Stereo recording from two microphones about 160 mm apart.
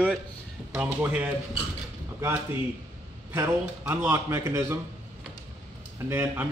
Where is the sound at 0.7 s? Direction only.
10° right (ahead or behind).